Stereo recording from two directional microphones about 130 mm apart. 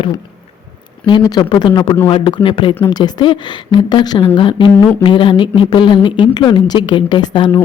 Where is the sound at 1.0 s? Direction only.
35° left (ahead or behind).